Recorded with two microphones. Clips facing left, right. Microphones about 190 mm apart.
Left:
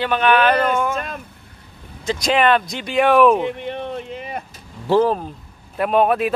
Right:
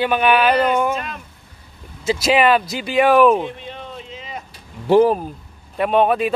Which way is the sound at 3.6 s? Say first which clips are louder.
Left 7 dB; 60° left (ahead or behind).